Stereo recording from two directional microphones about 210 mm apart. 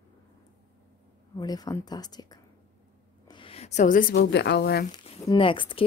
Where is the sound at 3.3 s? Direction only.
25° left (ahead or behind).